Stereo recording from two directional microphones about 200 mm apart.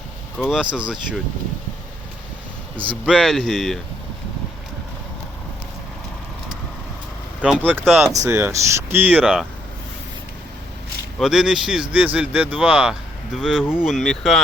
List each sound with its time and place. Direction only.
0.3 s speech: centre (ahead or behind)
2.7 s speech: 25° right (ahead or behind)
3.1 s speech: centre (ahead or behind)
7.4 s speech: 5° right (ahead or behind)
11.2 s speech: centre (ahead or behind)